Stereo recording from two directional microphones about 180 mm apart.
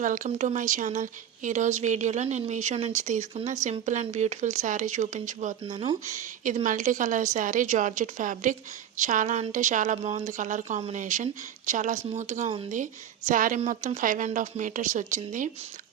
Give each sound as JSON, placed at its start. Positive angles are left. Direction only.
{"t": 0.0, "sound": "speech", "side_deg": -45}
{"t": 5.6, "sound": "speech", "side_deg": -30}
{"t": 6.1, "sound": "speech", "side_deg": -45}